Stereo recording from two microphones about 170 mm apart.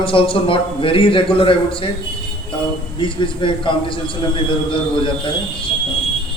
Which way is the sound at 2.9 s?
30° left (ahead or behind).